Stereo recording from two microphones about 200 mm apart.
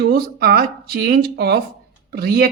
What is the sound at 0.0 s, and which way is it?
Speech, 50° right (ahead or behind).